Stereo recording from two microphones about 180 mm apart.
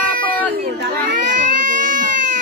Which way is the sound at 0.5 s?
60° right (ahead or behind).